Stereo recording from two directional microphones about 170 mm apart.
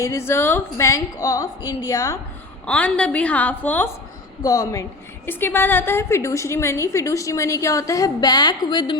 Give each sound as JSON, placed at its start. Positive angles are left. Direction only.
{"t": 0.0, "sound": "a woman's voice", "side_deg": 15}
{"t": 2.6, "sound": "a woman's voice", "side_deg": 5}
{"t": 4.4, "sound": "a woman's voice", "side_deg": 20}